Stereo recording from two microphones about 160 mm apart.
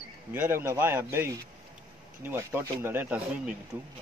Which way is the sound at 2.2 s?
15° right (ahead or behind).